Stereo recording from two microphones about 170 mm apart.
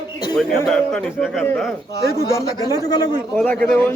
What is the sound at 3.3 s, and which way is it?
Speech, 5° left (ahead or behind).